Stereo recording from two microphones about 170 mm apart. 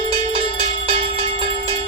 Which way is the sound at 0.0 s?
35° right (ahead or behind).